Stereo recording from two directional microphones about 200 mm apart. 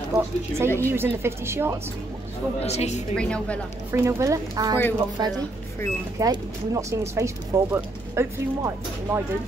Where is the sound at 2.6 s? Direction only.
30° left (ahead or behind).